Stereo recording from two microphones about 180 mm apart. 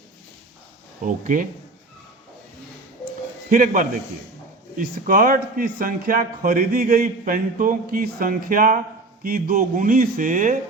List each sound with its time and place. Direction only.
1.0 s speech: 45° right (ahead or behind)
3.5 s speech: 45° right (ahead or behind)
5.0 s speech: 50° right (ahead or behind)